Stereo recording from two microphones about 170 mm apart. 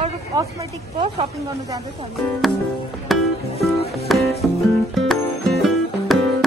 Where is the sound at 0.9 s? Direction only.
35° right (ahead or behind).